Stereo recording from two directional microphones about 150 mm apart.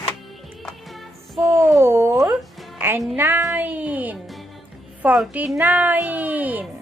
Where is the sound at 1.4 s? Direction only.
15° right (ahead or behind).